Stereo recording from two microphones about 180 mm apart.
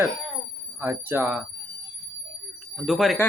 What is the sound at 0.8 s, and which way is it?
Speech, 10° right (ahead or behind).